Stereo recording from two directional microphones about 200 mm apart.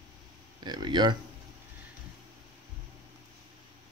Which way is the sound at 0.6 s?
20° right (ahead or behind).